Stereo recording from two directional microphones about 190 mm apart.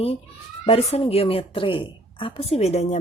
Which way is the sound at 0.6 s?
30° left (ahead or behind).